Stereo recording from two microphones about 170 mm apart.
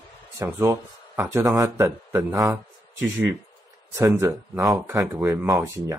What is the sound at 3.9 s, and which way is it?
Speech, 15° right (ahead or behind).